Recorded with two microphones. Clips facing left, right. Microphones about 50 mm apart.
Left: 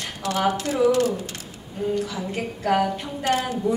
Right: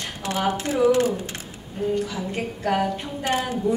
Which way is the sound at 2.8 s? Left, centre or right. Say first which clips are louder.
Left 1 dB; centre.